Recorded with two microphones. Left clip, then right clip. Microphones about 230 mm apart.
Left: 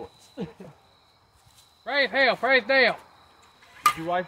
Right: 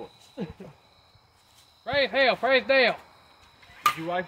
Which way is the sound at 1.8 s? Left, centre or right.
Left.